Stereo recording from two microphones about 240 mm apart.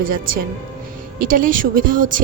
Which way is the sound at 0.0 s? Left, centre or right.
Right.